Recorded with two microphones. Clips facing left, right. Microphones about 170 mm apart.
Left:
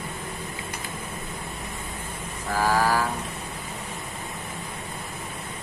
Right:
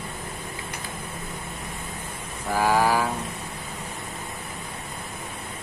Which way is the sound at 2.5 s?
15° right (ahead or behind).